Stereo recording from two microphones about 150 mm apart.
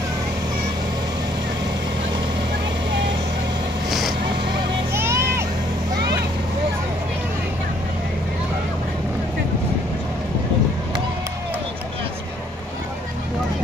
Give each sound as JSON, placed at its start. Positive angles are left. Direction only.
{"t": 4.9, "sound": "vehicle", "side_deg": -15}